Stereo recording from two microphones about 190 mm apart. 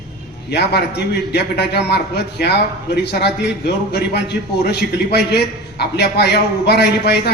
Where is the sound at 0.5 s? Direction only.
60° left (ahead or behind).